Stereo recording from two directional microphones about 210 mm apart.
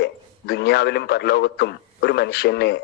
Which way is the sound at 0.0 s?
55° left (ahead or behind).